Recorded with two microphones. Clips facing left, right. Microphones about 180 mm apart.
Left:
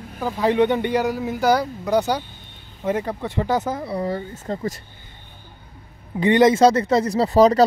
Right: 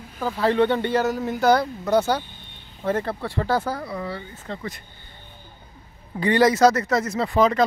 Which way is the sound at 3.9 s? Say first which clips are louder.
Left 6 dB; 40° left (ahead or behind).